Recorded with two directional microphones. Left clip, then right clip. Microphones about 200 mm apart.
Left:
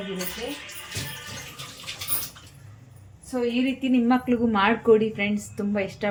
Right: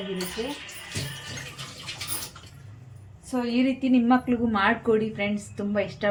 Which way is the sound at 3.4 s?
10° right (ahead or behind).